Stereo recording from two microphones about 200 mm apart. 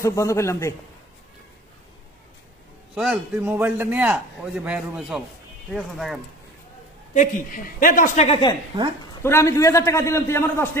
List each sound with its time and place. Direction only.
0.0 s a man's voice: 15° left (ahead or behind)
2.9 s a man's voice: centre (ahead or behind)
3.4 s a man's voice: 10° right (ahead or behind)
7.2 s a woman's voice: 45° left (ahead or behind); by 8.5 s 25° left (ahead or behind)
9.2 s a man's voice: 15° left (ahead or behind)